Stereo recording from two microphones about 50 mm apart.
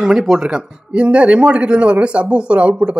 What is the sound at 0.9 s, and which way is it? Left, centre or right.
Speech, right.